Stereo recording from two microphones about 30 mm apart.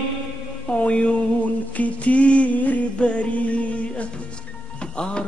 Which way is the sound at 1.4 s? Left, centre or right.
Left.